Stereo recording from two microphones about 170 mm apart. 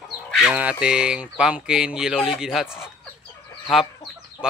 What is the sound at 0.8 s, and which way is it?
Speech, 5° right (ahead or behind).